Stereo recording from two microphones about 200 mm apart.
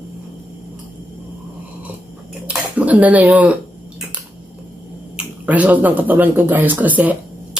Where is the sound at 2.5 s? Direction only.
5° right (ahead or behind).